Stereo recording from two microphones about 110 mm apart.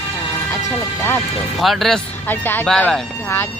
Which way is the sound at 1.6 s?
Centre (ahead or behind).